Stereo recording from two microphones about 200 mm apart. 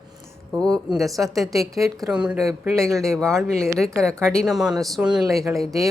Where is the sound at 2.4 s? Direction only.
15° right (ahead or behind).